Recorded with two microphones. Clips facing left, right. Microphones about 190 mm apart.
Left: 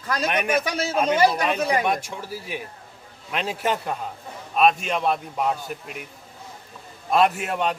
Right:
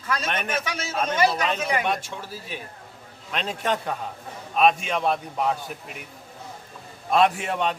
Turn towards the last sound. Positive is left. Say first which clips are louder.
# even
turn(degrees=0)  # may be behind; listen again after turning